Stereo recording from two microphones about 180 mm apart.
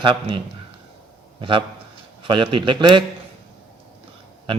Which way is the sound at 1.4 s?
25° right (ahead or behind).